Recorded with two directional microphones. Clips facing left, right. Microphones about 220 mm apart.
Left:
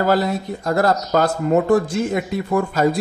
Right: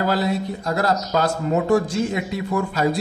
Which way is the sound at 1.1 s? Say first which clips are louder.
Left 5 dB; 50° left (ahead or behind).